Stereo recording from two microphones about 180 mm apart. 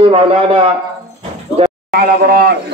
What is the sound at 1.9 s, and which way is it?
Speech, 60° right (ahead or behind).